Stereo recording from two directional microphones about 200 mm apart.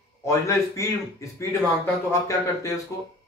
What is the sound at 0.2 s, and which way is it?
A man's voice, 15° left (ahead or behind).